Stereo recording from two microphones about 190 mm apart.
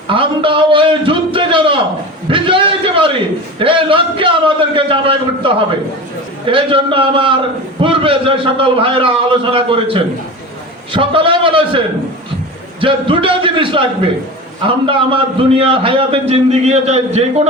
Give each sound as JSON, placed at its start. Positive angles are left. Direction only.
{"t": 0.1, "sound": "a sound", "side_deg": -25}
{"t": 3.6, "sound": "a man's voice", "side_deg": -25}
{"t": 12.8, "sound": "a man's voice", "side_deg": -25}